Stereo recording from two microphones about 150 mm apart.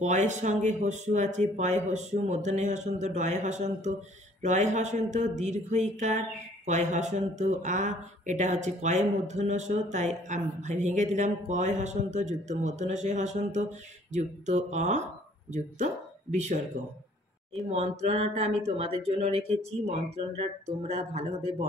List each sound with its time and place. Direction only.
0.0 s speech: 50° right (ahead or behind)
17.6 s speech: 45° right (ahead or behind)